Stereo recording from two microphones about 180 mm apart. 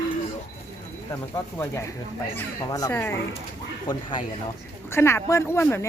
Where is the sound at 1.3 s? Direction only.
15° left (ahead or behind).